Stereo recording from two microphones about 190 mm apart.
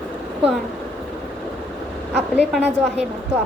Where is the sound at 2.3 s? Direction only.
5° right (ahead or behind).